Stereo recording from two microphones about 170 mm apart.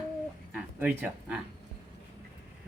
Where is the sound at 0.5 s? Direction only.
10° right (ahead or behind).